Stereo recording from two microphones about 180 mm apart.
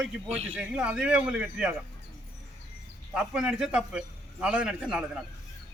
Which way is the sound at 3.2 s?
5° right (ahead or behind).